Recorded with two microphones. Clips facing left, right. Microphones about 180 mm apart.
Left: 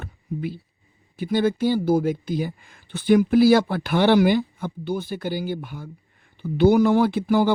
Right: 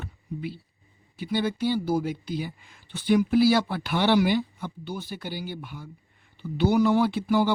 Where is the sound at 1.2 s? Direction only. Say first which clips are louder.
Left 6 dB; 50° left (ahead or behind).